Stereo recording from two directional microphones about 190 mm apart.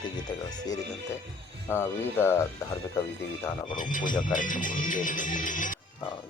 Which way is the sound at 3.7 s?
45° left (ahead or behind).